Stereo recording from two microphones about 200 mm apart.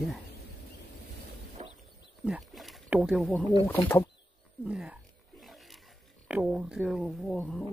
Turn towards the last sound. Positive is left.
turn(degrees=5)  # may be behind; listen again after turning